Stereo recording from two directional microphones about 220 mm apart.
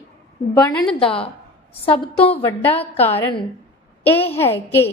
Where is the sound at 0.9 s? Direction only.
25° left (ahead or behind).